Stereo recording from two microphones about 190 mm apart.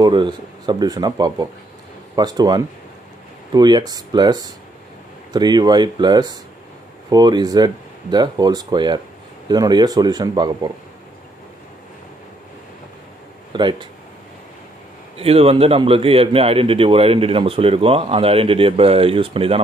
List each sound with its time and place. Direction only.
0.0 s speech: 25° right (ahead or behind)
13.5 s speech: 25° right (ahead or behind)
15.1 s speech: 30° right (ahead or behind)